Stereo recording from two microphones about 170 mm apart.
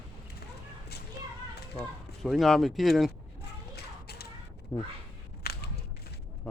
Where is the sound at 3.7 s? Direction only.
70° left (ahead or behind).